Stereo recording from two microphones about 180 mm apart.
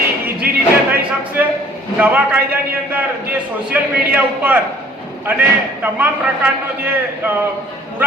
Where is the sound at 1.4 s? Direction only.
10° right (ahead or behind).